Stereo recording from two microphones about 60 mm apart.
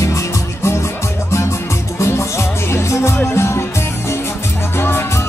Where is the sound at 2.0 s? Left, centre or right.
Left.